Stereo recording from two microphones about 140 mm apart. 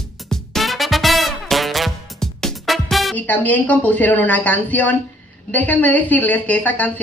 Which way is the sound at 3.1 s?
10° left (ahead or behind).